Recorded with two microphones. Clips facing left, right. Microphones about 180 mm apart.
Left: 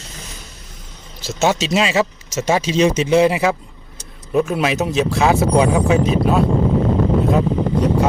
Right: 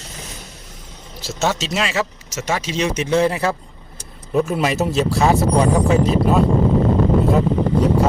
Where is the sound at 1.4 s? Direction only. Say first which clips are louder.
Left 4 dB; 15° left (ahead or behind).